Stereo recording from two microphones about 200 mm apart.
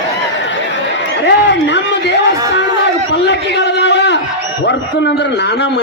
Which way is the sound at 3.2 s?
60° left (ahead or behind).